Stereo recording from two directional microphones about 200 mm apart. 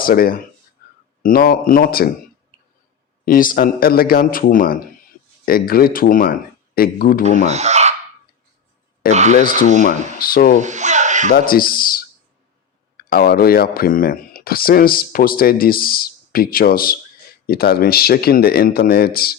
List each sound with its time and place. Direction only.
0.0 s speech: 45° left (ahead or behind)
0.8 s a sound: 50° left (ahead or behind)
1.2 s speech: 45° left (ahead or behind)
3.2 s speech: 45° left (ahead or behind)
7.4 s speech: 35° right (ahead or behind)
9.0 s speech: 45° left (ahead or behind)
10.6 s speech: 35° right (ahead or behind)
11.3 s speech: 45° left (ahead or behind)